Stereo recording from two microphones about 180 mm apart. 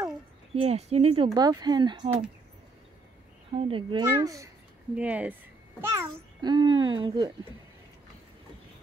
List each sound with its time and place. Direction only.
0.6 s a child's voice: 35° right (ahead or behind)
3.5 s a child's voice: 30° right (ahead or behind)
4.9 s a child's voice: 10° right (ahead or behind); by 7.3 s 25° right (ahead or behind)